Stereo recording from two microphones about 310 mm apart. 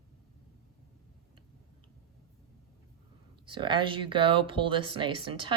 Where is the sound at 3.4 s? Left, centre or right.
Centre.